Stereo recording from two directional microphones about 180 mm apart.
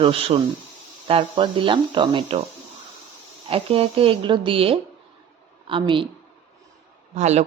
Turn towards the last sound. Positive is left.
turn(degrees=-40)  # may be behind; listen again after turning